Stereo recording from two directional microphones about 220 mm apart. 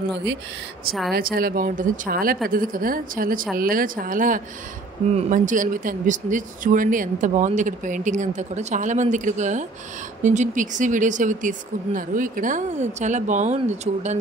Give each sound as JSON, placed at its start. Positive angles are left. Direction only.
{"t": 1.1, "sound": "speech", "side_deg": -40}